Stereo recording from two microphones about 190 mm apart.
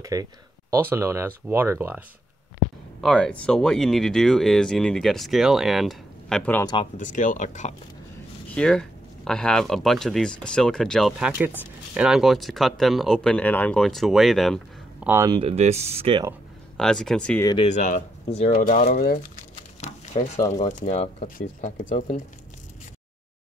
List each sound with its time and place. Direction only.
0.0 s speech: 15° right (ahead or behind)
3.0 s speech: 5° left (ahead or behind)
6.6 s speech: 25° left (ahead or behind)
7.0 s speech: 45° left (ahead or behind)
8.5 s speech: 5° left (ahead or behind)
15.0 s speech: 15° right (ahead or behind)
15.3 s speech: 30° right (ahead or behind)
16.7 s speech: 5° left (ahead or behind)
17.6 s speech: 40° left (ahead or behind)
19.8 s a sound: 35° left (ahead or behind)
20.5 s speech: 40° left (ahead or behind)
21.4 s speech: 45° left (ahead or behind)